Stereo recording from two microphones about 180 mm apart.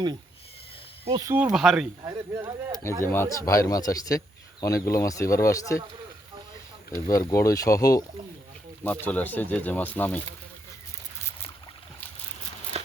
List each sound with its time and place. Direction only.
1.1 s speech: 20° right (ahead or behind)
1.5 s speech: 5° right (ahead or behind)
2.0 s speech: 20° right (ahead or behind)
3.0 s speech: 15° left (ahead or behind)
7.1 s speech: 15° left (ahead or behind)
8.8 s speech: 10° left (ahead or behind)
12.7 s a sound: 35° right (ahead or behind)